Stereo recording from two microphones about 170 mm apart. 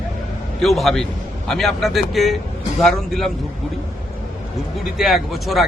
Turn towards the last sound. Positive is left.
turn(degrees=0)  # may be behind; listen again after turning